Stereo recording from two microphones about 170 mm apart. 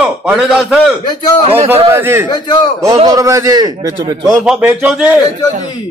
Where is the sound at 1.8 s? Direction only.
15° right (ahead or behind).